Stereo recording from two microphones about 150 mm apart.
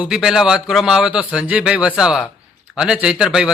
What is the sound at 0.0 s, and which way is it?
A man's voice, 5° right (ahead or behind).